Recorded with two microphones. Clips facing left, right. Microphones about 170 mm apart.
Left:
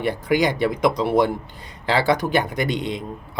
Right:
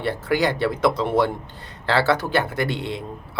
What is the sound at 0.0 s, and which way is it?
A man's voice, 15° left (ahead or behind).